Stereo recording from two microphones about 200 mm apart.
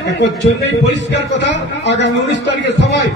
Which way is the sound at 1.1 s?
60° left (ahead or behind).